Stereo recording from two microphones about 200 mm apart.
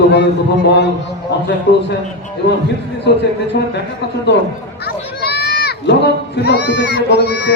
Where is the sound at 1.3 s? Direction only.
60° left (ahead or behind).